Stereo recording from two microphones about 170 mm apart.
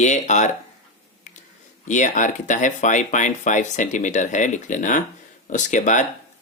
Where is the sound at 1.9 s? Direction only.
45° left (ahead or behind).